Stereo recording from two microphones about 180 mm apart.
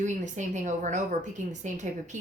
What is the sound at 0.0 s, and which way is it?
A woman's voice, 45° right (ahead or behind).